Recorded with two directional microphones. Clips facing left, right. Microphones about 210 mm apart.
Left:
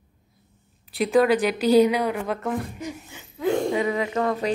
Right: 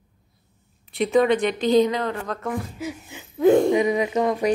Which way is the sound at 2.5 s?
5° right (ahead or behind).